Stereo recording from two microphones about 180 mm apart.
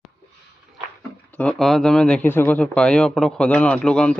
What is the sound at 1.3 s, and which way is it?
Speech, 5° left (ahead or behind).